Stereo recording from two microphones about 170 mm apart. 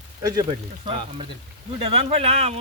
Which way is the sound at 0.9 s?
35° right (ahead or behind).